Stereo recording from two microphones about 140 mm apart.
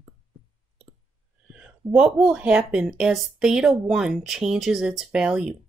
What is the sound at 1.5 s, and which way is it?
A woman's voice, 5° right (ahead or behind).